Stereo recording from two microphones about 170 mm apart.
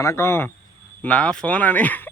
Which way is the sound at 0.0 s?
15° left (ahead or behind).